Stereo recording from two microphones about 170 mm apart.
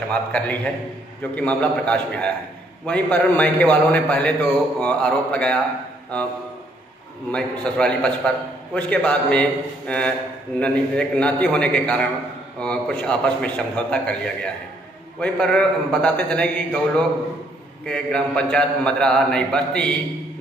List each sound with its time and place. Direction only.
0.1 s a man's voice: 5° left (ahead or behind)
7.2 s a man's voice: 5° left (ahead or behind)